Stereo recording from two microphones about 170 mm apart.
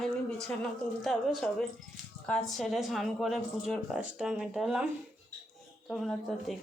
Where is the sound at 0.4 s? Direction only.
Centre (ahead or behind).